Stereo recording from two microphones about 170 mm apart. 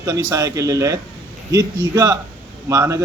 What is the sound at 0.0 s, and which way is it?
A man's voice, 20° right (ahead or behind).